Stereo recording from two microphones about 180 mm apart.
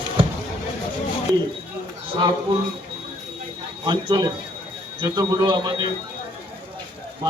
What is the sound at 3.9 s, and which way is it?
Speech, 25° right (ahead or behind).